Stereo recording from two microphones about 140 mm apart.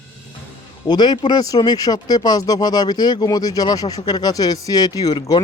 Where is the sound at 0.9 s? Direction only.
30° left (ahead or behind).